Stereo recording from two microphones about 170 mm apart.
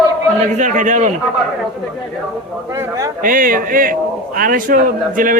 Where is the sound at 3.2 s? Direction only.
55° right (ahead or behind).